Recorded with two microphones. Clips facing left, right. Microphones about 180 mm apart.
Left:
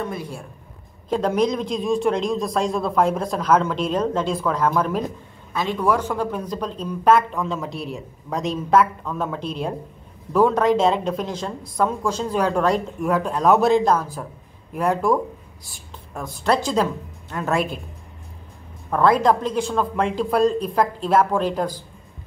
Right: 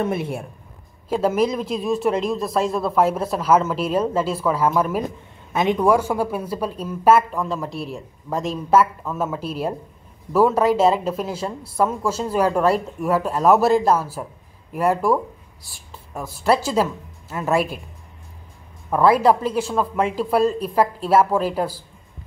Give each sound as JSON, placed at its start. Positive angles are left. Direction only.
{"t": 0.0, "sound": "a woman's voice", "side_deg": -25}
{"t": 1.0, "sound": "speech", "side_deg": -5}
{"t": 5.5, "sound": "speech", "side_deg": -20}
{"t": 18.9, "sound": "speech", "side_deg": -5}